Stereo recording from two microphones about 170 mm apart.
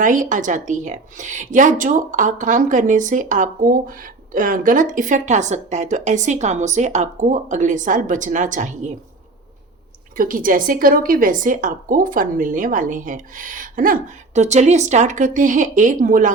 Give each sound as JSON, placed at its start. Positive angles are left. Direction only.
{"t": 0.0, "sound": "a woman's voice", "side_deg": -50}
{"t": 10.2, "sound": "a woman's voice", "side_deg": -55}